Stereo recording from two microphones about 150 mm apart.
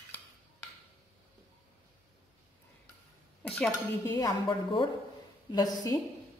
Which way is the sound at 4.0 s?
20° left (ahead or behind).